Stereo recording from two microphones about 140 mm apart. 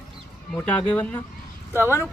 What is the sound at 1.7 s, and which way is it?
Speech, 15° right (ahead or behind).